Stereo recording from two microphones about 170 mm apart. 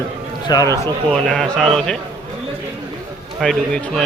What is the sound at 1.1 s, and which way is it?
Speech, 5° left (ahead or behind).